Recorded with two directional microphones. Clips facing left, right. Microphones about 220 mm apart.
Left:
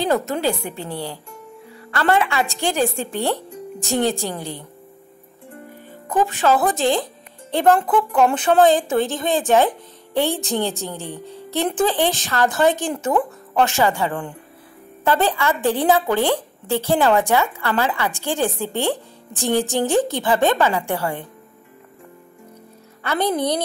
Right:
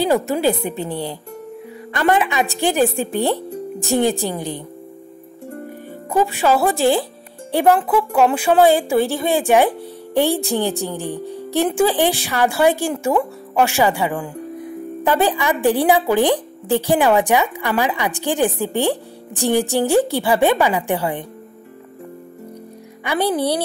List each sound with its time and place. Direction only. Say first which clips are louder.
0.0 s a woman's voice: right 3 dB; 15° right (ahead or behind)
6.0 s a woman's voice: right 1 dB; 15° right (ahead or behind)
23.0 s a woman's voice: right 2 dB; 10° right (ahead or behind)